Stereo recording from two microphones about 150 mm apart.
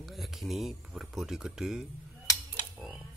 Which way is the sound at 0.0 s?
Centre (ahead or behind).